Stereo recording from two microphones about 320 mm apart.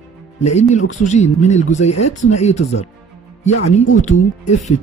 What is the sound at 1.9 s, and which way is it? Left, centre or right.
Speech, left.